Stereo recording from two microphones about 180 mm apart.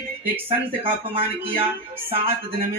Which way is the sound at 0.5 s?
30° right (ahead or behind).